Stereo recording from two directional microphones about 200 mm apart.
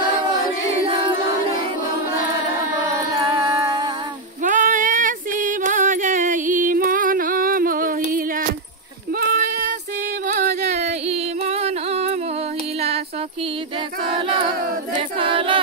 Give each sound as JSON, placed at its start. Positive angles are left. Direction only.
{"t": 3.2, "sound": "music", "side_deg": -20}
{"t": 4.4, "sound": "female singing", "side_deg": -40}
{"t": 9.1, "sound": "a sound", "side_deg": -45}
{"t": 10.7, "sound": "music", "side_deg": -35}
{"t": 15.1, "sound": "choir", "side_deg": -25}